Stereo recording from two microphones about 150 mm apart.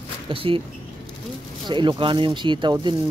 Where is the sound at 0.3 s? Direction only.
35° right (ahead or behind).